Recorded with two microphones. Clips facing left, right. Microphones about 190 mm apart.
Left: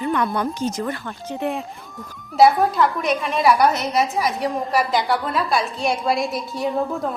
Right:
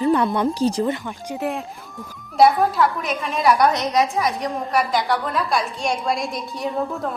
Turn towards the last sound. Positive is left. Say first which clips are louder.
# left 2 dB
turn(degrees=0)  # may be behind; listen again after turning